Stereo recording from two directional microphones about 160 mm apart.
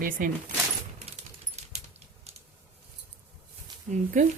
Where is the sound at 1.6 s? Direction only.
45° right (ahead or behind).